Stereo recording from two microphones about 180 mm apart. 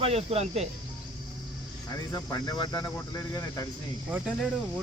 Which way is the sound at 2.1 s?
20° left (ahead or behind).